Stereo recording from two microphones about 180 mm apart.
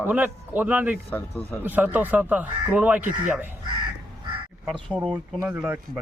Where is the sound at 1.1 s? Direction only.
10° left (ahead or behind).